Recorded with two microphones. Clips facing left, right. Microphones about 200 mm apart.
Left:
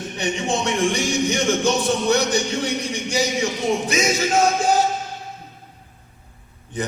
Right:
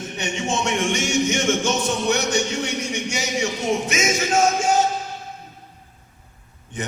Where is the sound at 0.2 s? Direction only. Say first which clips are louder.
Left 2 dB; 35° left (ahead or behind).